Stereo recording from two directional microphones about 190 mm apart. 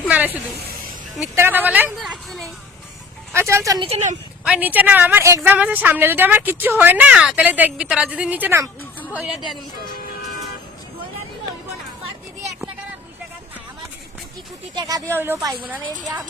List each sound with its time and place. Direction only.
1.4 s a woman's voice: 10° right (ahead or behind)
3.3 s a woman's voice: 15° right (ahead or behind)
3.8 s speech: 35° right (ahead or behind)
4.4 s a woman's voice: 5° right (ahead or behind)
14.8 s a woman's voice: 20° right (ahead or behind)